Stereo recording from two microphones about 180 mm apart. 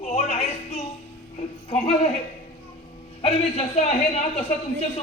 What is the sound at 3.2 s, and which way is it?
A man's voice, 40° left (ahead or behind).